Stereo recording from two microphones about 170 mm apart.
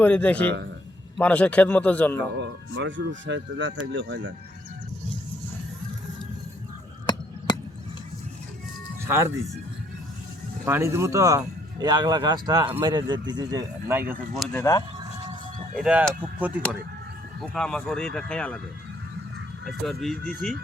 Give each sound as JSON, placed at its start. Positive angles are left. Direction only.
{"t": 0.0, "sound": "a man's voice", "side_deg": 10}
{"t": 2.4, "sound": "speech", "side_deg": -90}
{"t": 7.1, "sound": "a sound", "side_deg": 25}
{"t": 9.0, "sound": "speech", "side_deg": -15}
{"t": 10.7, "sound": "speech", "side_deg": -15}
{"t": 14.5, "sound": "speech", "side_deg": 20}
{"t": 15.7, "sound": "speech", "side_deg": -5}
{"t": 17.4, "sound": "speech", "side_deg": 5}
{"t": 19.6, "sound": "speech", "side_deg": 0}